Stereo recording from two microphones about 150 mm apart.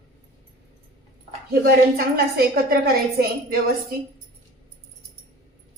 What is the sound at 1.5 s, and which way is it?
A woman's voice, 85° right.